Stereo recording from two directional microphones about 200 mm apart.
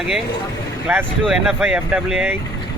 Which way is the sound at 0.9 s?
10° right (ahead or behind).